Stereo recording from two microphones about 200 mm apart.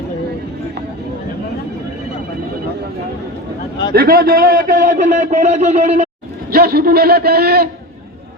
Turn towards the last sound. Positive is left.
turn(degrees=-50)  # may be behind; listen again after turning